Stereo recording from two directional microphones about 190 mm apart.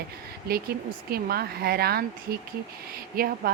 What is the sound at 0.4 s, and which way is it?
Speech, 55° right (ahead or behind).